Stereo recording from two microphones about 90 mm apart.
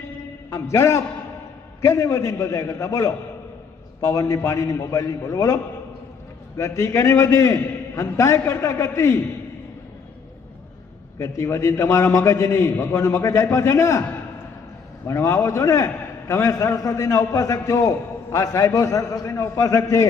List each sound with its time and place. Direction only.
0.5 s a man's voice: 30° left (ahead or behind)
6.6 s a man's voice: 35° left (ahead or behind)
11.2 s a man's voice: 30° left (ahead or behind)
15.0 s a man's voice: 30° left (ahead or behind)